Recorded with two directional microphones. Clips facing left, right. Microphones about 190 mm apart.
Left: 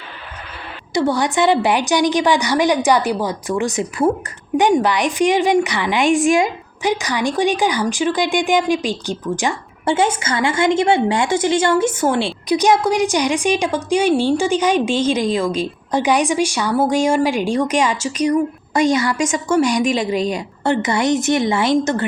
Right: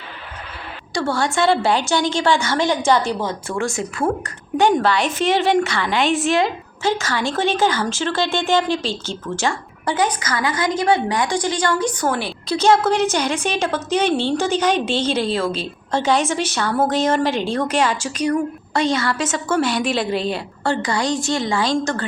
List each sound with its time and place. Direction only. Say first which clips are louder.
0.9 s a woman's voice: left 3 dB; 20° left (ahead or behind)
20.3 s a woman's voice: left 3 dB; 20° left (ahead or behind)